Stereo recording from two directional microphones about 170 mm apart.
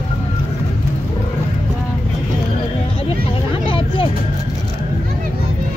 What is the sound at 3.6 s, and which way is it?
Vehicle, 30° left (ahead or behind).